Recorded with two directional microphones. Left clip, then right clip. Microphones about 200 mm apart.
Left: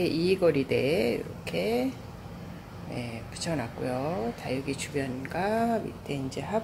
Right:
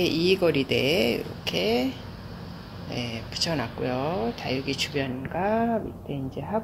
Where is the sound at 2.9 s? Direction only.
10° right (ahead or behind).